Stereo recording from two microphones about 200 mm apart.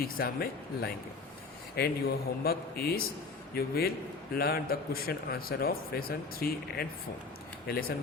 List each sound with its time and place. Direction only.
0.0 s a man's voice: 50° left (ahead or behind)